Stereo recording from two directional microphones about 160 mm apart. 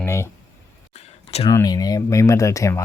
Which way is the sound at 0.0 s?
15° left (ahead or behind).